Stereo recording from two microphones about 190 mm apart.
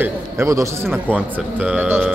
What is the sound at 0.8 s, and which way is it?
A man's voice, centre (ahead or behind).